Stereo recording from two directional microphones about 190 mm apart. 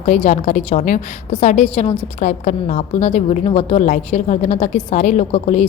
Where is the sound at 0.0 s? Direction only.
35° left (ahead or behind).